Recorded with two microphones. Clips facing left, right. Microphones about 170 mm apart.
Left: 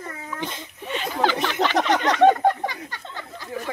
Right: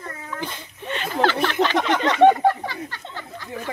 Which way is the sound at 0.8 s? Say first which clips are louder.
Even; 5° left (ahead or behind).